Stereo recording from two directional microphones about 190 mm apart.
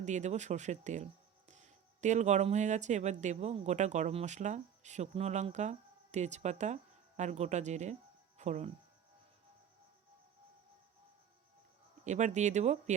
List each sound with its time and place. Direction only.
0.0 s speech: 40° right (ahead or behind)
12.0 s speech: 40° right (ahead or behind)